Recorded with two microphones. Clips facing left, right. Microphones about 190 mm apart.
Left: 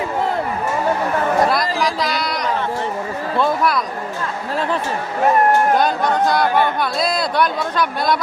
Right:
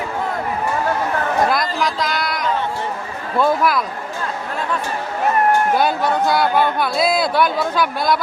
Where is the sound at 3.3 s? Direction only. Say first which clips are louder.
Right 2 dB; 5° right (ahead or behind).